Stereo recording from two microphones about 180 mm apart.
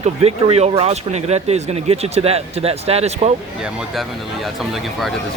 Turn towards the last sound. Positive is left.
turn(degrees=0)  # may be behind; listen again after turning